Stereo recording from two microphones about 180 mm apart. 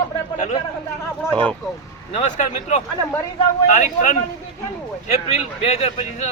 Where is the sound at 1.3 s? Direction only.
5° left (ahead or behind).